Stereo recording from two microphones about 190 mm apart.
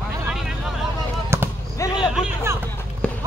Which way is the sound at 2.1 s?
10° right (ahead or behind).